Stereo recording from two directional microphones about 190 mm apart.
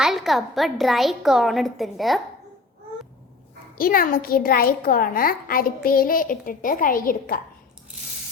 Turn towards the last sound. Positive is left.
turn(degrees=50)  # may be behind; listen again after turning